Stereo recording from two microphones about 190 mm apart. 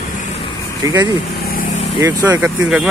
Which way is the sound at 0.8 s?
20° right (ahead or behind).